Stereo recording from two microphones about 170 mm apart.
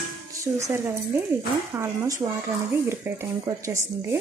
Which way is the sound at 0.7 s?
15° right (ahead or behind).